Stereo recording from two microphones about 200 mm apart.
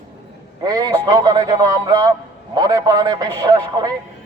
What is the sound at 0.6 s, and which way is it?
Speech, 20° right (ahead or behind).